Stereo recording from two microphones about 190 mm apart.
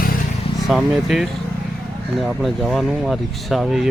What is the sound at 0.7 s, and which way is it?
Speech, centre (ahead or behind).